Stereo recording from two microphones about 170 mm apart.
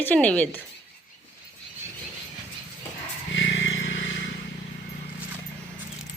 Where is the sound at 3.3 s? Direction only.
90° left.